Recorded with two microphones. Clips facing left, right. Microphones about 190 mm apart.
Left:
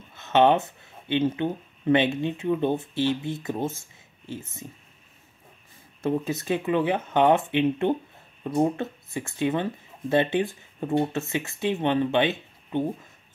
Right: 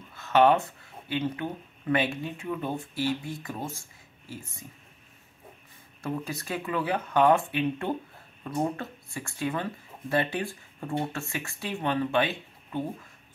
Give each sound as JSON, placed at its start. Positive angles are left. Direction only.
{"t": 0.1, "sound": "speech", "side_deg": 20}
{"t": 6.0, "sound": "speech", "side_deg": 25}